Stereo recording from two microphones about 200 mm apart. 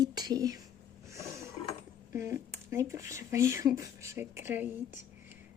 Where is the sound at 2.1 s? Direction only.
15° right (ahead or behind).